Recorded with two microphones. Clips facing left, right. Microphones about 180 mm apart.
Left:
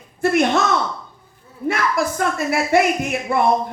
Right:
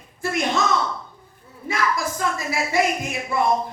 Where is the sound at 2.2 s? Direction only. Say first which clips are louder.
Left 5 dB; 60° left (ahead or behind).